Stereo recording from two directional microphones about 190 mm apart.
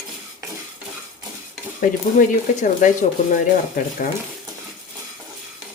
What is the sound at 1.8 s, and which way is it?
Speech, 45° left (ahead or behind).